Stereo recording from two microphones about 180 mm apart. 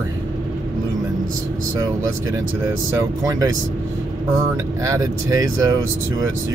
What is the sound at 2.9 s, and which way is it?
Speech, 20° right (ahead or behind).